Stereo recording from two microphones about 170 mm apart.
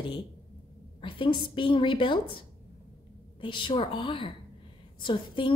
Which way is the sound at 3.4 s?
30° left (ahead or behind).